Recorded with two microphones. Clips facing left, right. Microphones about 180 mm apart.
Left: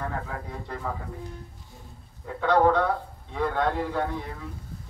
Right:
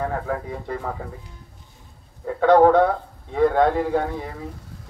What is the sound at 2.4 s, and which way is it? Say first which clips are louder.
Speech: right 7 dB; 50° right (ahead or behind).